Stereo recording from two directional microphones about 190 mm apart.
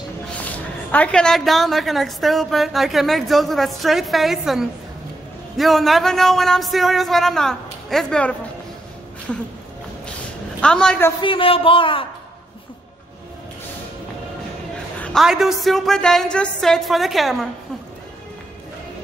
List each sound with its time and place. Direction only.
0.9 s a woman's voice: 5° left (ahead or behind)
10.6 s a woman's voice: 5° left (ahead or behind)
11.2 s a man's voice: 30° left (ahead or behind)
15.0 s a woman's voice: 5° left (ahead or behind)